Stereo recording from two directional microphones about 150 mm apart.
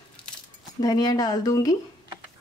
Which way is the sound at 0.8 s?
25° left (ahead or behind).